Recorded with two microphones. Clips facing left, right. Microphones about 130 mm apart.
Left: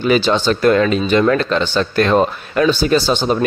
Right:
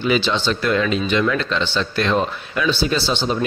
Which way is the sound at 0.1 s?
45° left (ahead or behind).